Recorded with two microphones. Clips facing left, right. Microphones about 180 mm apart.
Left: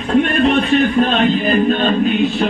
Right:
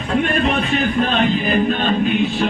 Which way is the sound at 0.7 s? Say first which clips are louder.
Left 4 dB; 40° left (ahead or behind).